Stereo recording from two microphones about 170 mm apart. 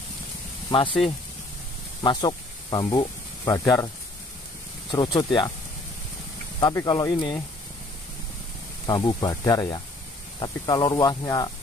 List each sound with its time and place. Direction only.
0.7 s speech: 30° left (ahead or behind)
2.0 s speech: 25° left (ahead or behind)
4.9 s speech: 25° left (ahead or behind)
6.6 s speech: 20° left (ahead or behind)
8.8 s speech: 25° left (ahead or behind)